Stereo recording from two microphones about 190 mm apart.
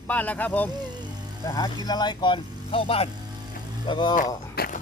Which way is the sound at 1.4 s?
20° left (ahead or behind).